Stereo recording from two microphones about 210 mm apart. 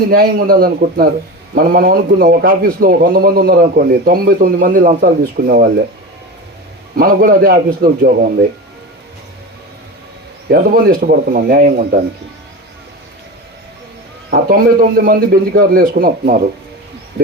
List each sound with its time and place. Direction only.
0.1 s a man's voice: 45° right (ahead or behind)
6.9 s a man's voice: 45° right (ahead or behind)
10.5 s a man's voice: 45° right (ahead or behind)
14.3 s a man's voice: 45° right (ahead or behind)